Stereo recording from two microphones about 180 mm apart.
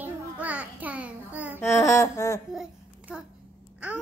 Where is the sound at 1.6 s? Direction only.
15° left (ahead or behind).